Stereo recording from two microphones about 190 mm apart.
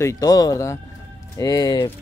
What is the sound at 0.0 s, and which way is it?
A man's voice, 20° left (ahead or behind).